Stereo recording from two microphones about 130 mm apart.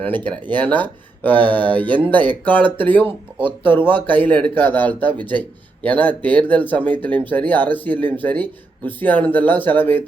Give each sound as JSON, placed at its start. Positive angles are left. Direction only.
{"t": 0.0, "sound": "speech", "side_deg": 15}